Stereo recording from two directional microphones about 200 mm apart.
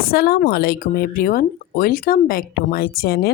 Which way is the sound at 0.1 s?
50° left (ahead or behind).